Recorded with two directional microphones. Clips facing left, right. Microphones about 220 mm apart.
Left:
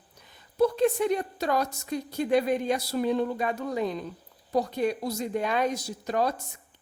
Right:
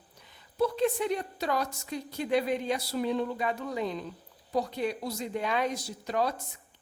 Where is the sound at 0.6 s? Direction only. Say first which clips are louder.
Left 4 dB; 45° left (ahead or behind).